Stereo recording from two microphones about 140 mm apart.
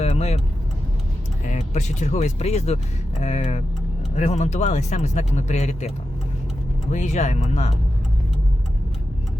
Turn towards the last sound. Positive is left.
turn(degrees=50)  # may be behind; listen again after turning